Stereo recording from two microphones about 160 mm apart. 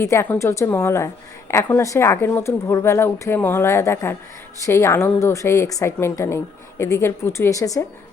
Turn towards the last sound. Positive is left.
turn(degrees=20)  # may be behind; listen again after turning